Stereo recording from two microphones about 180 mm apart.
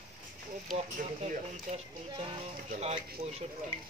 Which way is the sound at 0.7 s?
45° right (ahead or behind).